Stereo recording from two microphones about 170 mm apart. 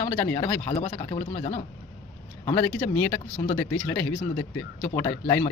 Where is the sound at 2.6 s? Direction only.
10° left (ahead or behind).